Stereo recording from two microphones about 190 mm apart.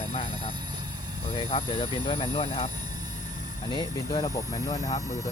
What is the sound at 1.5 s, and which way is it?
Speech, 30° left (ahead or behind).